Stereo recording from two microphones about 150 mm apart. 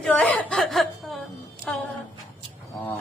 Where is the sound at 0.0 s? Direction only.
10° left (ahead or behind).